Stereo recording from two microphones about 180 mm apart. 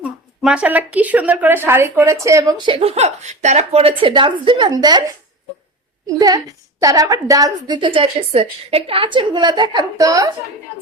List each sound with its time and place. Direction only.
0.0 s speech: 5° right (ahead or behind); by 5.0 s 20° right (ahead or behind)
6.1 s speech: 20° right (ahead or behind)